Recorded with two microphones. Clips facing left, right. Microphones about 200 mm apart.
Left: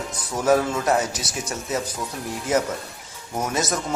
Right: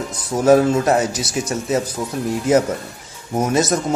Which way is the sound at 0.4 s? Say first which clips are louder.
Right 7 dB; 30° right (ahead or behind).